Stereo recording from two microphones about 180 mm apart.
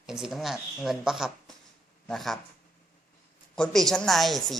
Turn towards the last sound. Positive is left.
turn(degrees=0)  # may be behind; listen again after turning